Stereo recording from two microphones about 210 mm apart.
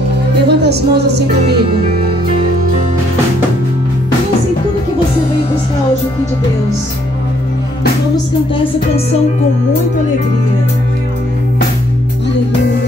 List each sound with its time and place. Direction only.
0.5 s speech: 50° right (ahead or behind)